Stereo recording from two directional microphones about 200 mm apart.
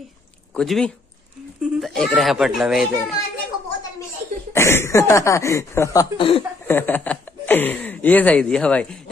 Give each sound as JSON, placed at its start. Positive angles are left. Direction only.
{"t": 0.6, "sound": "a child's voice", "side_deg": 5}
{"t": 4.6, "sound": "speech", "side_deg": 15}
{"t": 6.1, "sound": "speech", "side_deg": 25}
{"t": 6.7, "sound": "speech", "side_deg": 10}